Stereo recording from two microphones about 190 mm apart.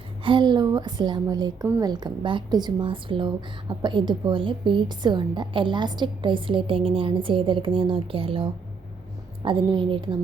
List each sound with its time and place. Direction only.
0.3 s a woman's voice: 25° right (ahead or behind)